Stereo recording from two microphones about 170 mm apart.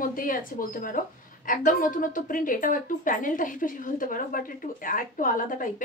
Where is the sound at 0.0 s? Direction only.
55° left (ahead or behind).